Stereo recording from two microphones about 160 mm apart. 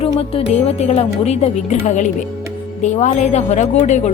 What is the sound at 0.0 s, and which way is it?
Speech, 40° left (ahead or behind).